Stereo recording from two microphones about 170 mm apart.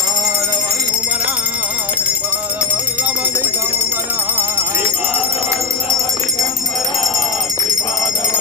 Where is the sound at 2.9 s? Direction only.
10° right (ahead or behind).